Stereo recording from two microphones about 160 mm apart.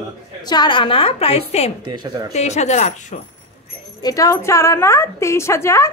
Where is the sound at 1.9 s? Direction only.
25° right (ahead or behind).